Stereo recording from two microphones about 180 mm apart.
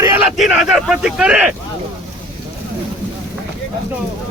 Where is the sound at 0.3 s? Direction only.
Centre (ahead or behind).